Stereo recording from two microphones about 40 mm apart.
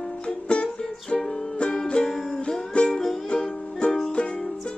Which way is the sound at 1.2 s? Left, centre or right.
Centre.